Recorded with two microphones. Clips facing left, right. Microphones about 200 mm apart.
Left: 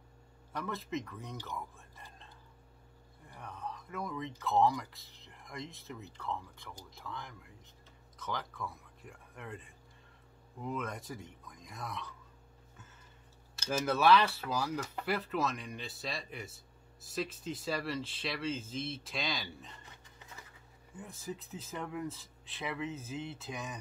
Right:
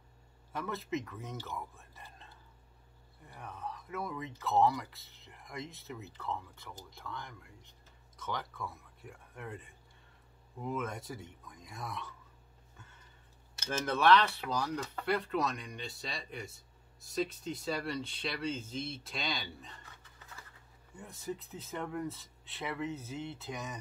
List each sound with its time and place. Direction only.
0.5 s speech: centre (ahead or behind)
1.3 s speech: 15° left (ahead or behind)
1.8 s whispering: centre (ahead or behind)
3.3 s a man's voice: centre (ahead or behind)
13.7 s speech: 5° left (ahead or behind)
20.0 s a sound: 20° left (ahead or behind)
20.9 s speech: centre (ahead or behind)